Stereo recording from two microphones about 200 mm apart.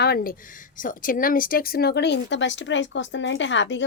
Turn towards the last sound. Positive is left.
turn(degrees=65)  # may be behind; listen again after turning